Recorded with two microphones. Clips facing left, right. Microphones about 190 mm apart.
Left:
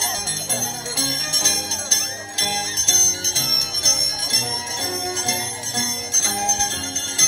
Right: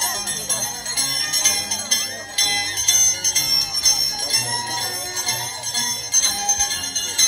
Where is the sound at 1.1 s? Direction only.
45° left (ahead or behind).